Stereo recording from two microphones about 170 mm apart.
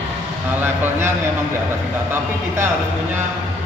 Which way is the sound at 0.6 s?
10° right (ahead or behind).